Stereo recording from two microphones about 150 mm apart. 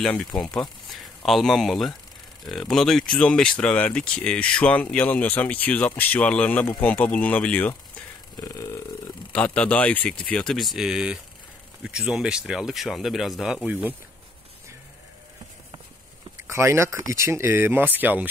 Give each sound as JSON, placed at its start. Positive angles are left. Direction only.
{"t": 0.0, "sound": "speech", "side_deg": 5}
{"t": 8.4, "sound": "burping", "side_deg": 25}
{"t": 9.3, "sound": "speech", "side_deg": 10}
{"t": 16.4, "sound": "speech", "side_deg": -15}